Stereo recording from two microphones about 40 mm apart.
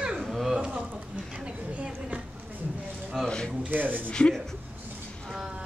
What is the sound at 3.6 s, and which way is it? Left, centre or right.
Speech, right.